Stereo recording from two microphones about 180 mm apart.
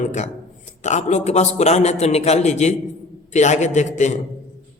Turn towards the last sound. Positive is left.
turn(degrees=40)  # may be behind; listen again after turning